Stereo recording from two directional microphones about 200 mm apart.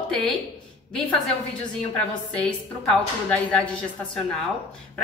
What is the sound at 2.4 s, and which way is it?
A woman's voice, 5° left (ahead or behind).